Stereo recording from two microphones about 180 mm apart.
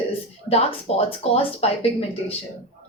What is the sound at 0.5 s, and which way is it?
A woman's voice, 35° left (ahead or behind).